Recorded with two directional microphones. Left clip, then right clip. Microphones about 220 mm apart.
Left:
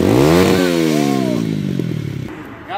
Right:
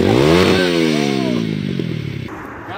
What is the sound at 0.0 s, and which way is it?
Vehicle, 55° left (ahead or behind).